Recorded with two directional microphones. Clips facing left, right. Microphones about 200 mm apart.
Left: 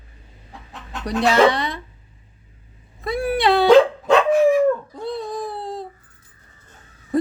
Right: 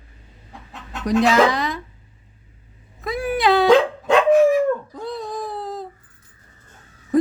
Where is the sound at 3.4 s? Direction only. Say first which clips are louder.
Even; centre (ahead or behind).